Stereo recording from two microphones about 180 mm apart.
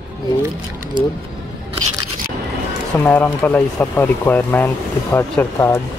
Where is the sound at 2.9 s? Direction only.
15° left (ahead or behind).